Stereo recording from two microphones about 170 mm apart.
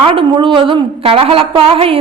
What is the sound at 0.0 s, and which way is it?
A woman's voice, 30° right (ahead or behind).